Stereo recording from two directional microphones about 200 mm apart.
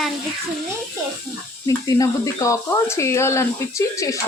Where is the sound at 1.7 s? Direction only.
15° left (ahead or behind).